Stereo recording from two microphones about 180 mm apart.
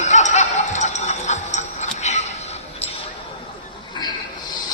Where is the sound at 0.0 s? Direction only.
40° left (ahead or behind).